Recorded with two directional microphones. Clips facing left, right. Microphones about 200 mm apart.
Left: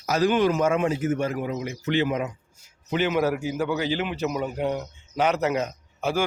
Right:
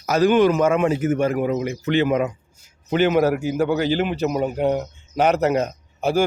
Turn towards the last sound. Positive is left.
turn(degrees=-35)  # may be behind; listen again after turning